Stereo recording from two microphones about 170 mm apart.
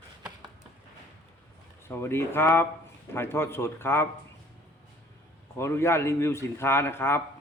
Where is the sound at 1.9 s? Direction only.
15° left (ahead or behind).